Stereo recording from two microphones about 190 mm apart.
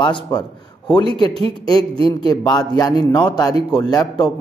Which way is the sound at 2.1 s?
20° left (ahead or behind).